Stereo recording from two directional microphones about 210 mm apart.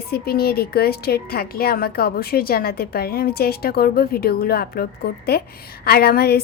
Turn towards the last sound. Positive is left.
turn(degrees=50)  # may be behind; listen again after turning